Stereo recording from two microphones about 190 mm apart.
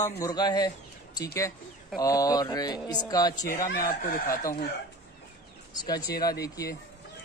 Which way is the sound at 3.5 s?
50° left (ahead or behind).